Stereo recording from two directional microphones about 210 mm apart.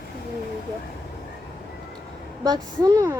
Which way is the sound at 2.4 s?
20° right (ahead or behind).